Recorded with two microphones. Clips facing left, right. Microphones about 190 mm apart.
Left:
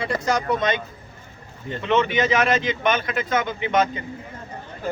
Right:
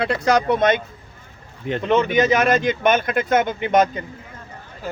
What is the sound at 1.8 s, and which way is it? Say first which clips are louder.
Speech: right 3 dB; 40° right (ahead or behind).